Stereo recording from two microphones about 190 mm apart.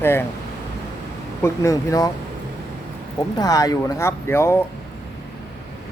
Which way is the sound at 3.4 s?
20° left (ahead or behind).